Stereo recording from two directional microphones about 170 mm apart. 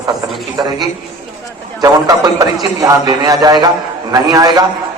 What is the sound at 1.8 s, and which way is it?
A man's voice, 20° right (ahead or behind).